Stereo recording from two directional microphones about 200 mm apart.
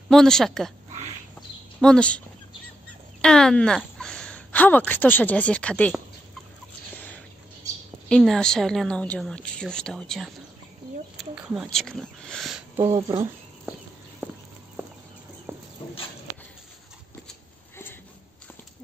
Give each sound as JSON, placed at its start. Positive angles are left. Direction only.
{"t": 0.1, "sound": "speech", "side_deg": 0}
{"t": 1.8, "sound": "speech", "side_deg": 5}
{"t": 8.1, "sound": "speech", "side_deg": 0}
{"t": 12.8, "sound": "speech", "side_deg": -25}
{"t": 14.2, "sound": "walk", "side_deg": -10}
{"t": 17.3, "sound": "a sound", "side_deg": 10}